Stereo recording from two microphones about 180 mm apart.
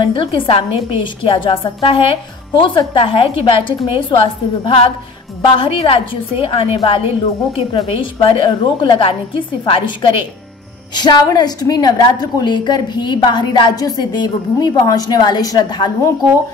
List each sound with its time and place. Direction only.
0.1 s a woman's voice: 30° left (ahead or behind)